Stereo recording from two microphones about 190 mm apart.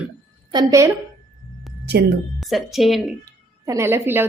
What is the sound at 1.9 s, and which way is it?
Speech, 65° right (ahead or behind).